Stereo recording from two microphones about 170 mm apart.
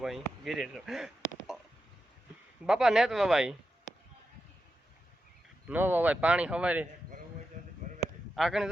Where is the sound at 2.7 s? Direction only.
5° right (ahead or behind).